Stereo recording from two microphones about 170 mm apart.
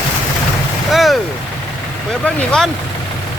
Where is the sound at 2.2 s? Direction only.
5° left (ahead or behind).